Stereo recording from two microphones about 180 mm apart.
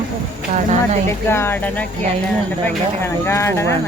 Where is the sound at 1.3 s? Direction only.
15° left (ahead or behind).